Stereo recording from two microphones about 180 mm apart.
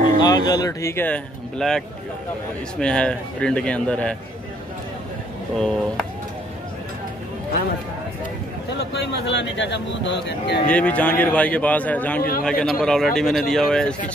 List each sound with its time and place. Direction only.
0.2 s a man's voice: 20° left (ahead or behind)
5.6 s a man's voice: 5° left (ahead or behind)
8.9 s a man's voice: 70° left (ahead or behind)
10.7 s a man's voice: 10° left (ahead or behind)
12.2 s a man's voice: 55° left (ahead or behind)
12.4 s a man's voice: 5° left (ahead or behind)